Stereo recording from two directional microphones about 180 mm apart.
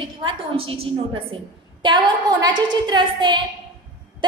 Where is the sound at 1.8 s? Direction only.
25° right (ahead or behind).